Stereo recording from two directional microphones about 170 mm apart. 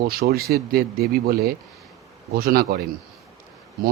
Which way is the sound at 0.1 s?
65° right (ahead or behind).